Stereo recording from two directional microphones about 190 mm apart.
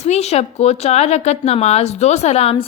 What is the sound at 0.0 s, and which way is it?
Speech, 35° left (ahead or behind).